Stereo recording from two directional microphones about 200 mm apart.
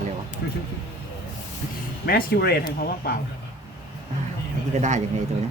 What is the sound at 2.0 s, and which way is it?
Speech, 50° left (ahead or behind).